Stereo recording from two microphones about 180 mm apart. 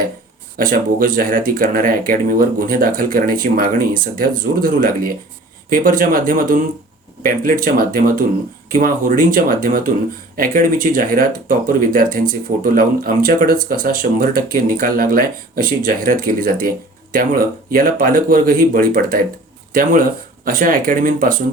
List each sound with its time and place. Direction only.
0.5 s speech: 50° right (ahead or behind)